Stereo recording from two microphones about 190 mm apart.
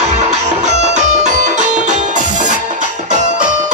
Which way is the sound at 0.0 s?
35° right (ahead or behind).